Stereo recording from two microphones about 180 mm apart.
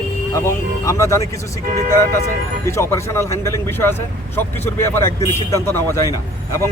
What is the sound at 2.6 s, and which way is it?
A man's voice, 15° left (ahead or behind).